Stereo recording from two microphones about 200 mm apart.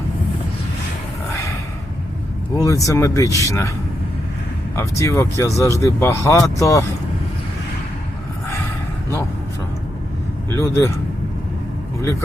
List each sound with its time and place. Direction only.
2.6 s speech: 15° left (ahead or behind)
4.7 s speech: 15° left (ahead or behind)
10.5 s speech: 15° left (ahead or behind)